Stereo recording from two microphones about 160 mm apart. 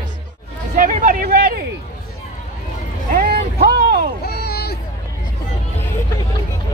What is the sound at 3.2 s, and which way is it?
Vehicle, 75° right (ahead or behind).